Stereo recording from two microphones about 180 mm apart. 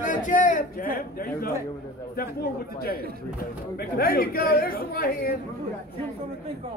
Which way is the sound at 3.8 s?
55° left (ahead or behind).